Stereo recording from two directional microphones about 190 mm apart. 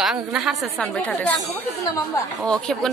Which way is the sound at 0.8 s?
5° left (ahead or behind).